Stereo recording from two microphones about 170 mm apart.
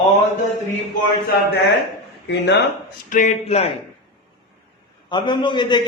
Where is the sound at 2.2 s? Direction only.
90° left.